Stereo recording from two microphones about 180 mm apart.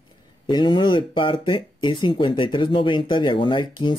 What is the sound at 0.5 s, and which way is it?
Speech, 25° left (ahead or behind).